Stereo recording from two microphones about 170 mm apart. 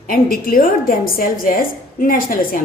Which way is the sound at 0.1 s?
55° left (ahead or behind).